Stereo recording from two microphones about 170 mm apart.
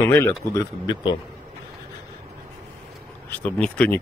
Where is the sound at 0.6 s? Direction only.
25° left (ahead or behind).